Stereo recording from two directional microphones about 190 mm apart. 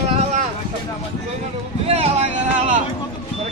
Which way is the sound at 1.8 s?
35° right (ahead or behind).